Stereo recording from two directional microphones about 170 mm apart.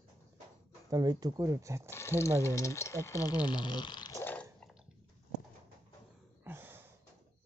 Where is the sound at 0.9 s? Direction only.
25° right (ahead or behind).